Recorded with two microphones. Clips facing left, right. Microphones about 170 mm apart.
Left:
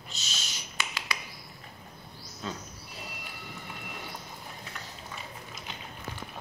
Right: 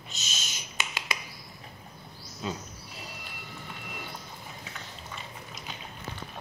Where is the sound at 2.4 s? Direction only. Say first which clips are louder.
Right 3 dB; 10° right (ahead or behind).